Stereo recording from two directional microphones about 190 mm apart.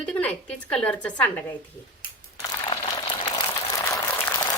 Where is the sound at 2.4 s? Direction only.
20° left (ahead or behind).